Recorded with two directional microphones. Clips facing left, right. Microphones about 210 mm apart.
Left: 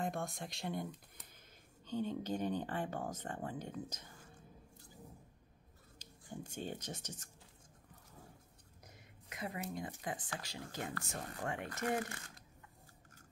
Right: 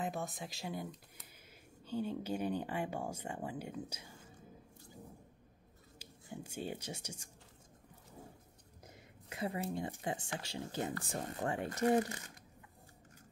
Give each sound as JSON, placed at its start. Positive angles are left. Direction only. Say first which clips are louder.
{"t": 0.0, "sound": "speech", "louder": "even", "side_deg": -5}
{"t": 5.9, "sound": "speech", "louder": "even", "side_deg": -10}
{"t": 8.8, "sound": "speech", "louder": "right 4 dB", "side_deg": -30}